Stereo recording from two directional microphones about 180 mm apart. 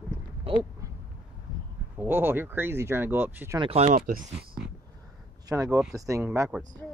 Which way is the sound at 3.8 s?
50° right (ahead or behind).